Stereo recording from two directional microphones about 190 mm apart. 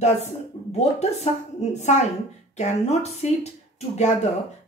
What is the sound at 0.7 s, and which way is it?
Speech, 35° left (ahead or behind).